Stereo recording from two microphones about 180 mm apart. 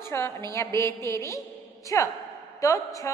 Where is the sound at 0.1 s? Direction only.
15° left (ahead or behind).